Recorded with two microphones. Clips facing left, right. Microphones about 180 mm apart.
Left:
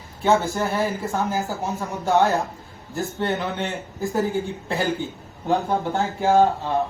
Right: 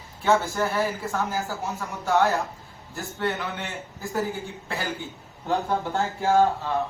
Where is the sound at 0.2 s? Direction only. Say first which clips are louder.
Left 2 dB; 20° left (ahead or behind).